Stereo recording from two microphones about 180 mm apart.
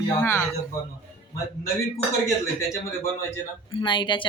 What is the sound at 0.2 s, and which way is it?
Speech, 15° left (ahead or behind).